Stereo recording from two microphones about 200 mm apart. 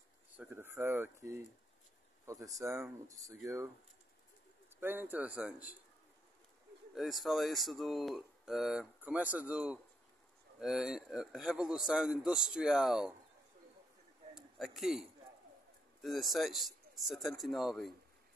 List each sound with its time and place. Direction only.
0.4 s speech: 10° right (ahead or behind)
4.7 s speech: 10° right (ahead or behind)
7.0 s speech: centre (ahead or behind)
14.3 s a sound: centre (ahead or behind)
16.0 s speech: centre (ahead or behind)